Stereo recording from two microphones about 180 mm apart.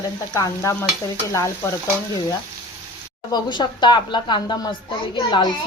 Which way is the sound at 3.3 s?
25° left (ahead or behind).